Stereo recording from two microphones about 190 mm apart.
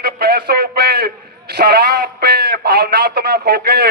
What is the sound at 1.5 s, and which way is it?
A man's voice, 55° right (ahead or behind).